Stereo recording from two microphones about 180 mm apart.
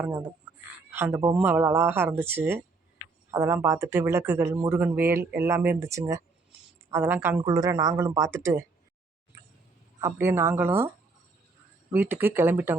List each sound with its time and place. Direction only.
0.0 s speech: 10° right (ahead or behind)
0.5 s a sound: 10° right (ahead or behind)
0.9 s speech: 10° right (ahead or behind)
9.3 s a sound: 15° right (ahead or behind)
10.0 s speech: 15° right (ahead or behind)
11.9 s speech: 10° right (ahead or behind)